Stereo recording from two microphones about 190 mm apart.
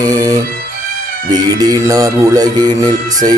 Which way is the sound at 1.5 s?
20° right (ahead or behind).